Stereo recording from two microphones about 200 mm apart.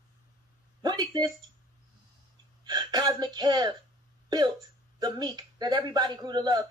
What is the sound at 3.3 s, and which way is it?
Speech, 20° right (ahead or behind).